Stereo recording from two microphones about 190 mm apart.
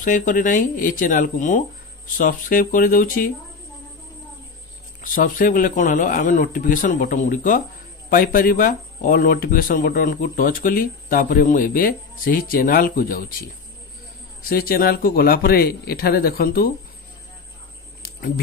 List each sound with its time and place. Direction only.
0.0 s speech: 45° left (ahead or behind)
5.0 s speech: 45° left (ahead or behind)
14.4 s speech: 50° left (ahead or behind)
18.0 s a sound: 55° left (ahead or behind)